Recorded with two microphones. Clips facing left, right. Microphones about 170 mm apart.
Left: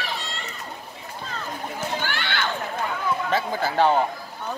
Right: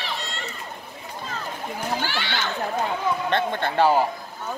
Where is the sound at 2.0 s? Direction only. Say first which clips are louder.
Even; 55° left (ahead or behind).